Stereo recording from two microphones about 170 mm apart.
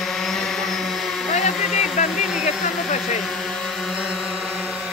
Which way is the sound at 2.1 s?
Centre (ahead or behind).